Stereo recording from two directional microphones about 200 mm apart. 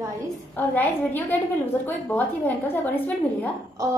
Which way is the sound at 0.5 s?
10° left (ahead or behind).